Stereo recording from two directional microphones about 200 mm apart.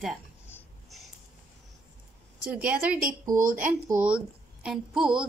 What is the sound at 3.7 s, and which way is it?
Speech, 10° right (ahead or behind).